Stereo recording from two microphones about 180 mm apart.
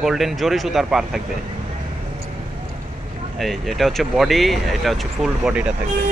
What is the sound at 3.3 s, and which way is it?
Speech, centre (ahead or behind).